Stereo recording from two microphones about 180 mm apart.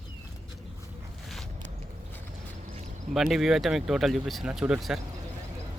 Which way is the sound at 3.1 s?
Centre (ahead or behind).